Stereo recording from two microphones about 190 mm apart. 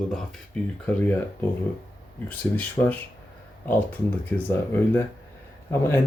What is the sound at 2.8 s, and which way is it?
Speech, 25° left (ahead or behind).